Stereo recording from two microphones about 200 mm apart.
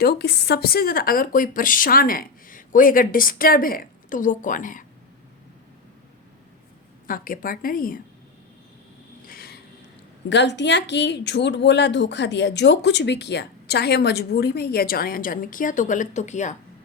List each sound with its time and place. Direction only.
0.0 s speech: 55° left (ahead or behind)
7.1 s speech: 45° left (ahead or behind)
9.2 s a sound: 50° left (ahead or behind)
10.2 s speech: 60° left (ahead or behind); by 16.6 s 35° left (ahead or behind)